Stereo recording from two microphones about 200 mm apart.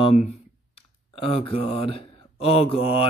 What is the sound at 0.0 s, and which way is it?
Speech, 35° left (ahead or behind).